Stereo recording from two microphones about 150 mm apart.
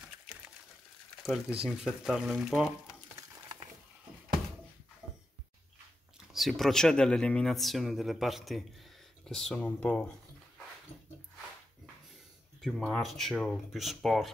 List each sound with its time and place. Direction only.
1.6 s speech: 5° right (ahead or behind)
6.3 s speech: centre (ahead or behind)
12.6 s speech: centre (ahead or behind)